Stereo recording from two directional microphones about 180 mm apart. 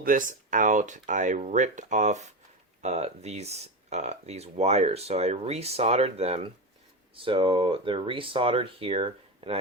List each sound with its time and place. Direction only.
0.0 s speech: 50° right (ahead or behind); by 9.6 s 30° right (ahead or behind)